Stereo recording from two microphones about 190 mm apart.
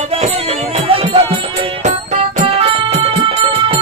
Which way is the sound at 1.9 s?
35° right (ahead or behind).